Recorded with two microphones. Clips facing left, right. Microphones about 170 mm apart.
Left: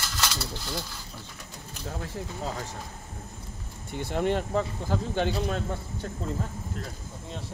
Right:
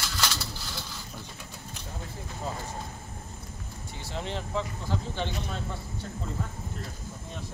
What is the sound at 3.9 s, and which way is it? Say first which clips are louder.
Speech: left 9 dB; 55° left (ahead or behind).